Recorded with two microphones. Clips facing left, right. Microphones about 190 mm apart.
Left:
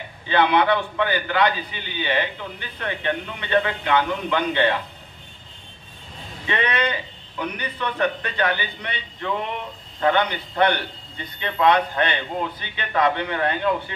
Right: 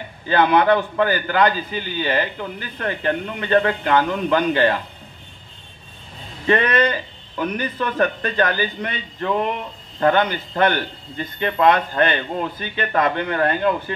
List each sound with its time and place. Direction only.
0.3 s a man's voice: 40° right (ahead or behind)
6.4 s a man's voice: 40° right (ahead or behind)